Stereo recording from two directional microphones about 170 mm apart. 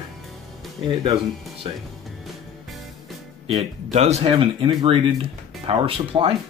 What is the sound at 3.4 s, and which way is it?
Speech, 40° right (ahead or behind).